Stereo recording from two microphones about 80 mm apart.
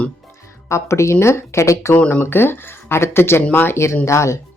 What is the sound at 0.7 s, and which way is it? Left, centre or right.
Speech, left.